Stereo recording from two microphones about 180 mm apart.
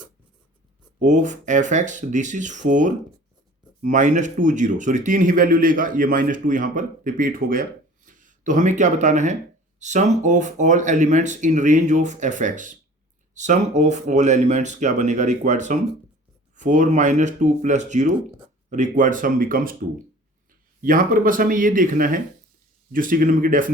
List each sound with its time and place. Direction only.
0.9 s speech: 45° right (ahead or behind)
20.8 s speech: 50° right (ahead or behind)